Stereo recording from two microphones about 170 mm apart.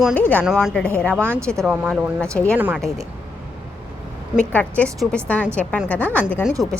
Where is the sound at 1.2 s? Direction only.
15° right (ahead or behind).